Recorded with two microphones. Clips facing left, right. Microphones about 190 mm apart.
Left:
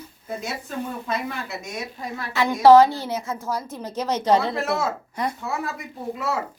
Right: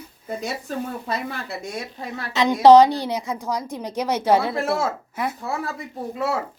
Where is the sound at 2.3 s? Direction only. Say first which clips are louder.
Right 1 dB; 20° right (ahead or behind).